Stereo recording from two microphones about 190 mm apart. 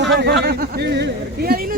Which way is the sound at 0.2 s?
60° right (ahead or behind).